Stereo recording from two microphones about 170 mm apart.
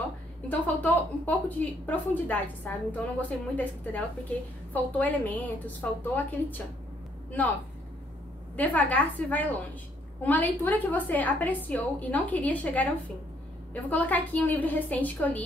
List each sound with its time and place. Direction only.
0.5 s a woman's voice: 10° left (ahead or behind)
8.5 s a woman's voice: 10° left (ahead or behind)